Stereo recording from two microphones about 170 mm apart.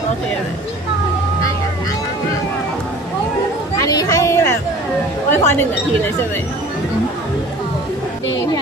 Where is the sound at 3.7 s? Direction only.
20° left (ahead or behind).